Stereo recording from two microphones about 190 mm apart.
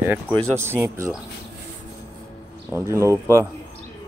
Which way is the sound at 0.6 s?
10° right (ahead or behind).